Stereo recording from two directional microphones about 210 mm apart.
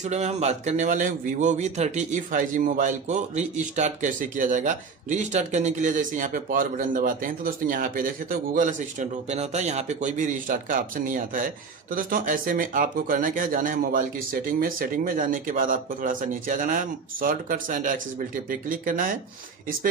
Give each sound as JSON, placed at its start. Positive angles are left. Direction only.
{"t": 0.0, "sound": "a man's voice", "side_deg": -30}